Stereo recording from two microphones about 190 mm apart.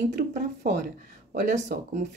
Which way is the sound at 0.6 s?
50° right (ahead or behind).